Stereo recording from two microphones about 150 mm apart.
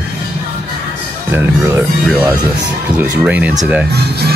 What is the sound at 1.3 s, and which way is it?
Speech, 15° right (ahead or behind).